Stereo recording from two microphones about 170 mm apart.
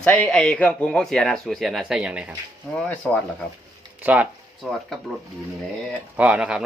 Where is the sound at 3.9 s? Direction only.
10° right (ahead or behind).